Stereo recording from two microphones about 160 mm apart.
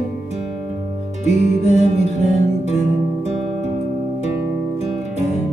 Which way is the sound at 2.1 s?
45° right (ahead or behind).